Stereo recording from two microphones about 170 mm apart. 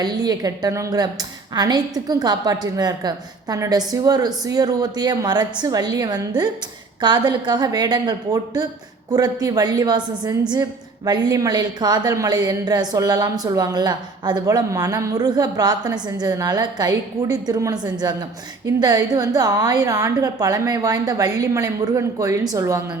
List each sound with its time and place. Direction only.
0.0 s a woman's voice: 25° right (ahead or behind)